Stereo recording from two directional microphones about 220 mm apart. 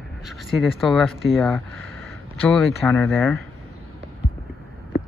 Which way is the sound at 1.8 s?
65° right (ahead or behind).